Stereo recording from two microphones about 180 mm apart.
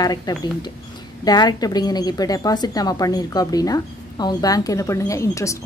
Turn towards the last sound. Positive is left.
turn(degrees=15)  # may be behind; listen again after turning